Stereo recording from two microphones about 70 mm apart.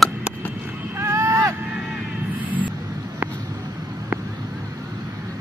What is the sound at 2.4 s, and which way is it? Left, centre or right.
Vehicle, right.